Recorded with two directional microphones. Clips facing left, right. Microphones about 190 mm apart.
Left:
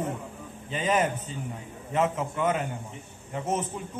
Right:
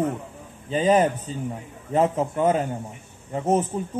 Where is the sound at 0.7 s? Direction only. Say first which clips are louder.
Right 7 dB; 35° right (ahead or behind).